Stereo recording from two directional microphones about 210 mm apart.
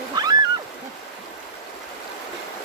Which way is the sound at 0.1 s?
20° right (ahead or behind).